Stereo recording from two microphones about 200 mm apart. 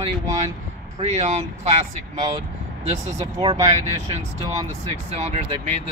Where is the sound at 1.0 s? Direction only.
35° right (ahead or behind).